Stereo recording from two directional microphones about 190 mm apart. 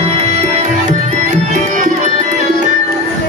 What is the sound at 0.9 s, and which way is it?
Music, 40° right (ahead or behind).